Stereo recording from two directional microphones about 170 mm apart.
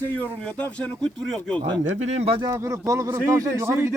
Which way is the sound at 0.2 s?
10° left (ahead or behind).